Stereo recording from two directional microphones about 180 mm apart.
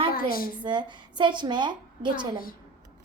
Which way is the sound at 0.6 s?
25° right (ahead or behind).